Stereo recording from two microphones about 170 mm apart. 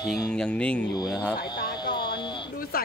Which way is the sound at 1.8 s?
25° left (ahead or behind).